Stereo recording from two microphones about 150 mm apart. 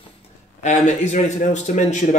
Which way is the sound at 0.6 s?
50° left (ahead or behind).